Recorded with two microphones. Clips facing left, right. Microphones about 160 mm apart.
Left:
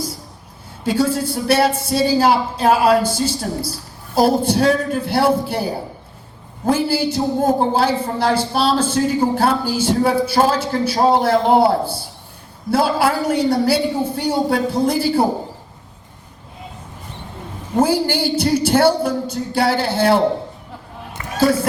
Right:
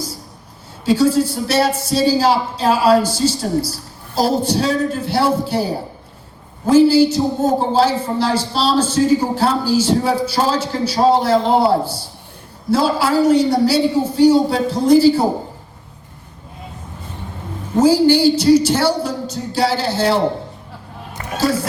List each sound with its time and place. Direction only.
0.9 s a woman's voice: 55° left (ahead or behind)
6.7 s a woman's voice: 55° left (ahead or behind)
17.8 s a woman's voice: 55° left (ahead or behind)
21.3 s speech: 55° left (ahead or behind)